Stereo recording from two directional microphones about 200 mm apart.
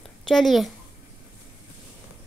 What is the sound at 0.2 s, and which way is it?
Speech, centre (ahead or behind).